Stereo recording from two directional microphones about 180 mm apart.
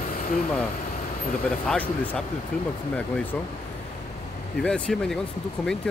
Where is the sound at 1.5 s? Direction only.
5° left (ahead or behind).